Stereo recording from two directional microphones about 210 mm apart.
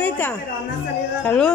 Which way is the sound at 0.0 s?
10° left (ahead or behind).